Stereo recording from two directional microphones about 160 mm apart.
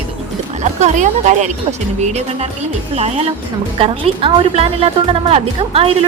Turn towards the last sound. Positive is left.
turn(degrees=-35)  # may be behind; listen again after turning